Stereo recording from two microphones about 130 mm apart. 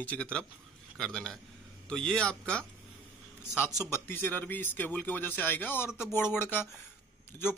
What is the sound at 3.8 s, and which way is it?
A man's voice, 20° left (ahead or behind).